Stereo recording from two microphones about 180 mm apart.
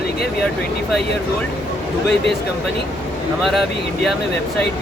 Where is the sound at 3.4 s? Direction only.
Centre (ahead or behind).